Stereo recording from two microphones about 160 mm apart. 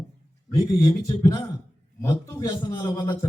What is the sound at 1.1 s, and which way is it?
A man's voice, 20° left (ahead or behind).